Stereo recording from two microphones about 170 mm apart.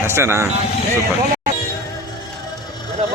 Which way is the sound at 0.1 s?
15° right (ahead or behind).